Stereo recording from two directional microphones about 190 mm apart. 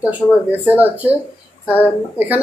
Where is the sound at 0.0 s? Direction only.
10° right (ahead or behind).